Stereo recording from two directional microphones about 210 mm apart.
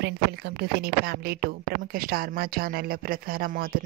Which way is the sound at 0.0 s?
50° right (ahead or behind).